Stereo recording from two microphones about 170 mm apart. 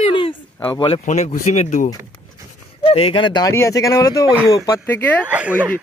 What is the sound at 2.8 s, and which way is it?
Speech, 35° left (ahead or behind).